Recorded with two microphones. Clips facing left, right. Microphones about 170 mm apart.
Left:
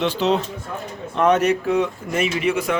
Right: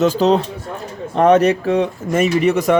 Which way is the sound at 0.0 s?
40° right (ahead or behind).